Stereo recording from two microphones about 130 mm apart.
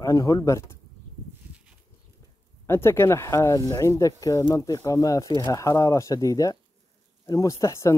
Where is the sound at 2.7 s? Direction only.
20° left (ahead or behind).